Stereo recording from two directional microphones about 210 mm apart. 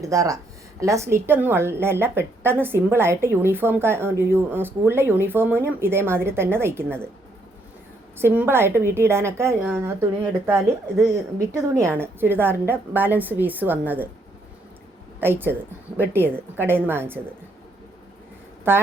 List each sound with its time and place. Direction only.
0.0 s a woman's voice: 15° right (ahead or behind)
8.2 s a woman's voice: 10° right (ahead or behind)
15.2 s a woman's voice: 10° right (ahead or behind)
18.7 s a woman's voice: 10° right (ahead or behind)